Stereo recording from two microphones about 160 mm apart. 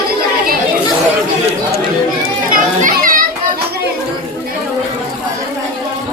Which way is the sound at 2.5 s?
55° right (ahead or behind).